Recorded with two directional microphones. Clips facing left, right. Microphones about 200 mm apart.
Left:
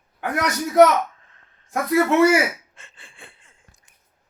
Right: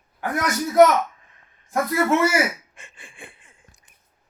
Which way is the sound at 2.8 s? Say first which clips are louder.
Right 3 dB; 15° right (ahead or behind).